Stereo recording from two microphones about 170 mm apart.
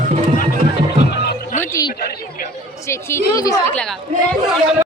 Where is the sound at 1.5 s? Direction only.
20° left (ahead or behind).